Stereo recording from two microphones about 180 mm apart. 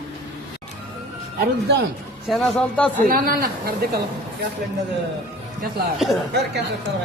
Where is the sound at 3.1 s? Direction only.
55° right (ahead or behind).